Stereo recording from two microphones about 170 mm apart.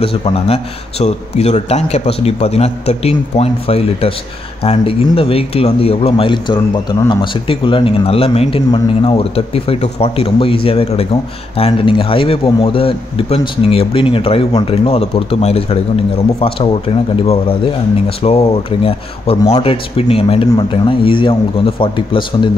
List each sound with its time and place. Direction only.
0.0 s speech: 35° left (ahead or behind)
18.0 s speech: 35° left (ahead or behind)